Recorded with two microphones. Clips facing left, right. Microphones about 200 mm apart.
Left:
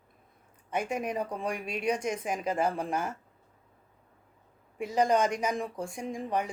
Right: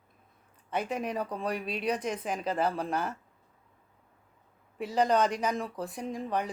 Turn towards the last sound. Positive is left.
turn(degrees=10)  # may be behind; listen again after turning